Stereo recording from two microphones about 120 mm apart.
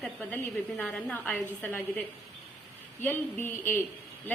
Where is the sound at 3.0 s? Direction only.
15° left (ahead or behind).